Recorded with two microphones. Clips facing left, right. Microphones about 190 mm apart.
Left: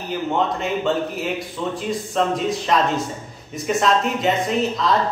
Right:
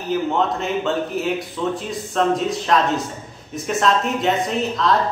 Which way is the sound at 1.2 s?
Centre (ahead or behind).